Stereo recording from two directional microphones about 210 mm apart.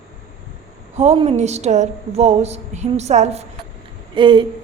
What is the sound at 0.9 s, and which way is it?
A woman's voice, 30° right (ahead or behind).